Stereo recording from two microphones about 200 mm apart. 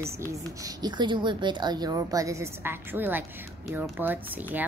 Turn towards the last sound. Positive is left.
turn(degrees=-10)  # may be behind; listen again after turning